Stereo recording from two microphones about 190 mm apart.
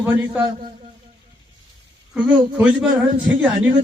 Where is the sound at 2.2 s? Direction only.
5° right (ahead or behind).